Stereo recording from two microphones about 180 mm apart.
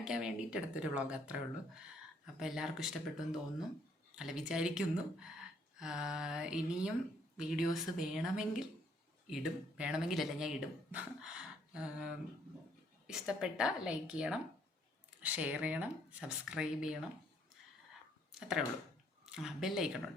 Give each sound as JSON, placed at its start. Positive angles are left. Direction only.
{"t": 0.0, "sound": "speech", "side_deg": -5}
{"t": 18.3, "sound": "a sound", "side_deg": -5}
{"t": 19.2, "sound": "speech", "side_deg": -5}